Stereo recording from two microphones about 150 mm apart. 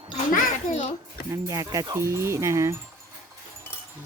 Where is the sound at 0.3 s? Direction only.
60° left (ahead or behind).